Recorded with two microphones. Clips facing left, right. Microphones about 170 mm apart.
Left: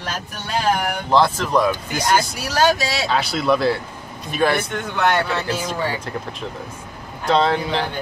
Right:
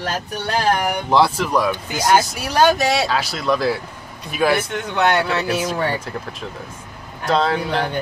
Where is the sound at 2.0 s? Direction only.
55° right (ahead or behind).